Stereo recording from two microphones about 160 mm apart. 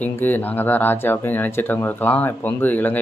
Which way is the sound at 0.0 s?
10° left (ahead or behind).